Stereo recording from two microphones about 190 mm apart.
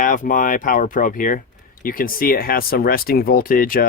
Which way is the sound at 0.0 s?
45° left (ahead or behind).